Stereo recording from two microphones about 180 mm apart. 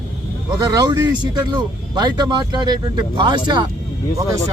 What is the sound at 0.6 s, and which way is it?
Speech, 20° right (ahead or behind).